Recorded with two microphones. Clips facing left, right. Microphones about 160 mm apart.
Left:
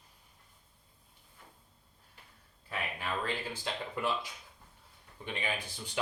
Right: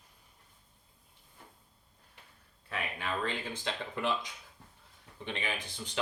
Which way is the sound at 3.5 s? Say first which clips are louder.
Even; 10° left (ahead or behind).